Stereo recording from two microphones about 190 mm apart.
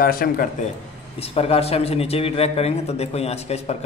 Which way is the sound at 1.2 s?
30° left (ahead or behind).